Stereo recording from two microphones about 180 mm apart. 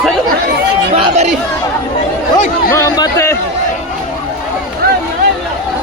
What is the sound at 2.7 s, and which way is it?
Speech, 20° left (ahead or behind).